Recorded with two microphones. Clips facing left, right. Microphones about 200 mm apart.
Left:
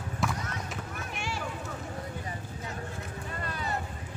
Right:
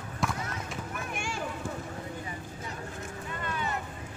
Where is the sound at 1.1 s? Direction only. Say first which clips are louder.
Left 1 dB; 50° right (ahead or behind).